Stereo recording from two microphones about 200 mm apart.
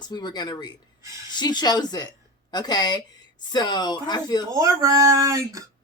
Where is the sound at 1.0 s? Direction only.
15° right (ahead or behind).